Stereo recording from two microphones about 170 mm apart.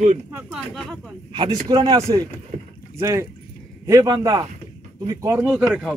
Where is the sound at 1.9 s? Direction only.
20° right (ahead or behind).